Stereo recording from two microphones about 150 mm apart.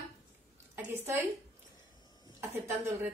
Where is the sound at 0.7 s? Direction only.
15° right (ahead or behind).